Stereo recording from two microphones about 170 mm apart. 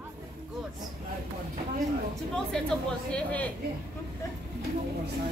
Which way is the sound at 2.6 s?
5° left (ahead or behind).